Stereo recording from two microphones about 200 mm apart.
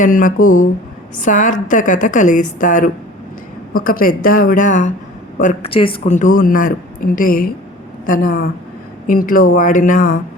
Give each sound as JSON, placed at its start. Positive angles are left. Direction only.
{"t": 0.0, "sound": "a woman's voice", "side_deg": 40}